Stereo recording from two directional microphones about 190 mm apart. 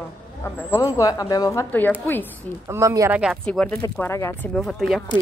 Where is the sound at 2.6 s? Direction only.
15° right (ahead or behind).